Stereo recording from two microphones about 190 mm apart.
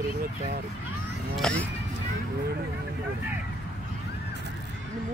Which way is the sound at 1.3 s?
5° left (ahead or behind).